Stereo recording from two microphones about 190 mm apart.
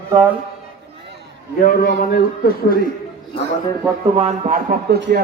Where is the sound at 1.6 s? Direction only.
45° left (ahead or behind).